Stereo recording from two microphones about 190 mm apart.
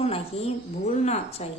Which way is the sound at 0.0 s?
30° left (ahead or behind).